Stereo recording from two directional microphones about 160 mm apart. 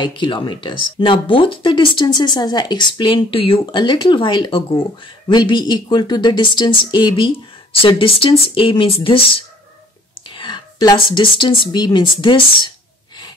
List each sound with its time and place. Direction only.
0.0 s speech: 30° left (ahead or behind)
10.2 s a sound: 30° left (ahead or behind)
11.7 s speech: 30° left (ahead or behind)